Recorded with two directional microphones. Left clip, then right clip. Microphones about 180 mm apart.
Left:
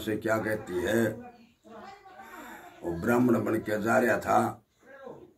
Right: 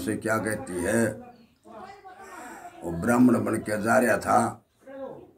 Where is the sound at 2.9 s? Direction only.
15° right (ahead or behind).